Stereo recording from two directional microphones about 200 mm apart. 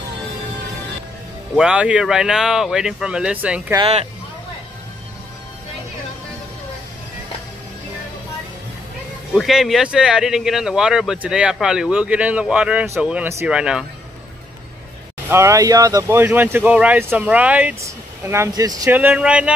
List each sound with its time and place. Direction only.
1.6 s speech: 5° right (ahead or behind)
3.7 s speech: 30° right (ahead or behind)
9.3 s speech: centre (ahead or behind)
15.2 s speech: 15° right (ahead or behind)